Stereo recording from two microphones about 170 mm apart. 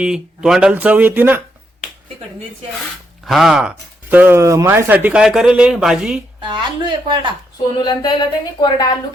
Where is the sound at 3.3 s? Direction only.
Centre (ahead or behind).